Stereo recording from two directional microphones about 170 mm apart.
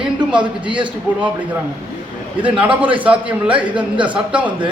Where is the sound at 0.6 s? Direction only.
30° right (ahead or behind).